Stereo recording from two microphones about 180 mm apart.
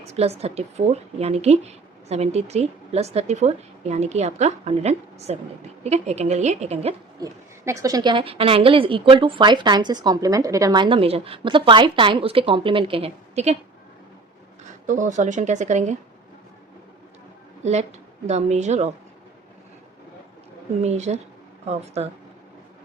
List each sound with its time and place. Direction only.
0.1 s a woman's voice: 35° right (ahead or behind)
7.2 s a woman's voice: 15° right (ahead or behind); by 13.6 s 35° right (ahead or behind)
14.8 s speech: 45° right (ahead or behind)
17.6 s a woman's voice: 40° right (ahead or behind)
20.8 s a woman's voice: 40° right (ahead or behind)